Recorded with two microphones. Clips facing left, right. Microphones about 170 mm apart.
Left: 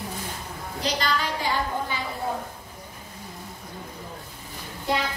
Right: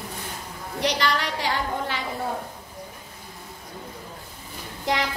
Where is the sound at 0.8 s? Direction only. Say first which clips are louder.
Right 2 dB; 70° right (ahead or behind).